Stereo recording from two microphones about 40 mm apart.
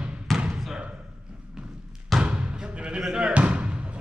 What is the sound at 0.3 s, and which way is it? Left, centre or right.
Basketball bounce, centre.